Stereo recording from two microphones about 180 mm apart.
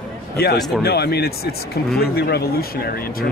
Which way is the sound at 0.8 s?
60° left (ahead or behind).